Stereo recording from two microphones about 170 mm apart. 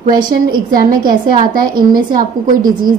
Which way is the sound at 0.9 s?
55° right (ahead or behind).